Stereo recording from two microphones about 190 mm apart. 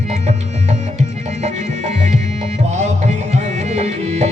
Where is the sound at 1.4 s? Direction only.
40° right (ahead or behind).